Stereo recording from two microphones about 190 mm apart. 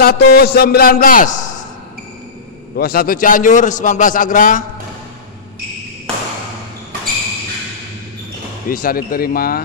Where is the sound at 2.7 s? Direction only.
50° left (ahead or behind).